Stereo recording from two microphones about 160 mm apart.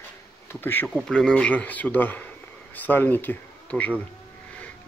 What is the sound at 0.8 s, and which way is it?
Speech, centre (ahead or behind).